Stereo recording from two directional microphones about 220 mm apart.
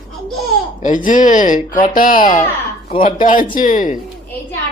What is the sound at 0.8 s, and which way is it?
Speech, 35° left (ahead or behind).